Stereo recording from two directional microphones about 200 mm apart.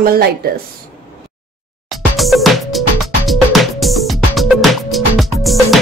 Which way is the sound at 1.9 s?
Centre (ahead or behind).